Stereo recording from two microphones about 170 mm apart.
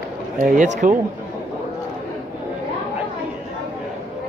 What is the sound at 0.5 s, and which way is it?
Speech, 45° right (ahead or behind).